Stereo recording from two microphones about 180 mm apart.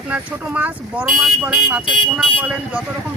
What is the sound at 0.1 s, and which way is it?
Speech, 10° right (ahead or behind).